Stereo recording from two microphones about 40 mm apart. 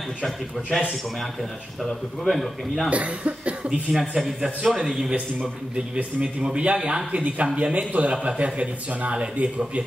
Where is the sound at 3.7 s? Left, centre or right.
Centre.